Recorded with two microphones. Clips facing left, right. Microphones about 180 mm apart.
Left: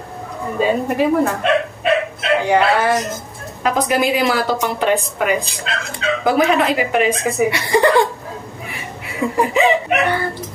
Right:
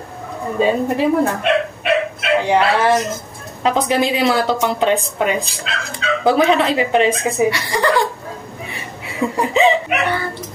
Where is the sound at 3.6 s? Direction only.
25° right (ahead or behind).